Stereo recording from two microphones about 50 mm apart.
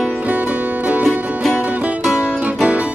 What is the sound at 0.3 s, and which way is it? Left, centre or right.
Music, right.